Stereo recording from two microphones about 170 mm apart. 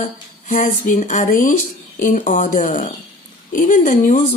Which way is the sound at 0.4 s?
50° left (ahead or behind).